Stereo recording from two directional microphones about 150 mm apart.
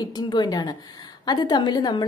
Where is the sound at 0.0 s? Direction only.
30° left (ahead or behind).